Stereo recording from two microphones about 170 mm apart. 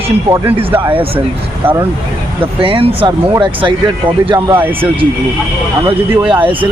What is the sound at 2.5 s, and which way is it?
Speech, 30° right (ahead or behind).